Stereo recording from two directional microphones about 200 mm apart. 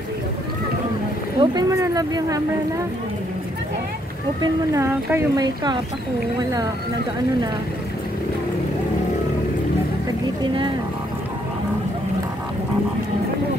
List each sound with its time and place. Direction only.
1.4 s speech: 20° right (ahead or behind)
4.4 s speech: 15° right (ahead or behind)